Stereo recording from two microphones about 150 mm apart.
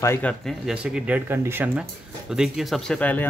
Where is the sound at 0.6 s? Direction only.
5° right (ahead or behind).